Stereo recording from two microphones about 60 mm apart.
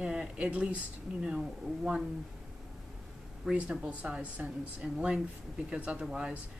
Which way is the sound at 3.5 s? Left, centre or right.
Centre.